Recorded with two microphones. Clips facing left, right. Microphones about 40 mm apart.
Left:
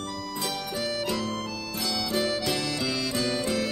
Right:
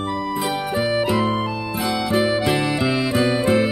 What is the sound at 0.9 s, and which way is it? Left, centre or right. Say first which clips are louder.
Music: right 11 dB; right.